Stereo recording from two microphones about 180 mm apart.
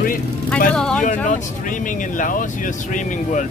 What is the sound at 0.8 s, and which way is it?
Speech, 5° left (ahead or behind).